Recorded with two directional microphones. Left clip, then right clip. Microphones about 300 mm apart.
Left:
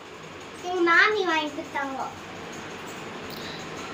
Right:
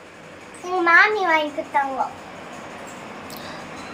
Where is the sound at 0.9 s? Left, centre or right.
Centre.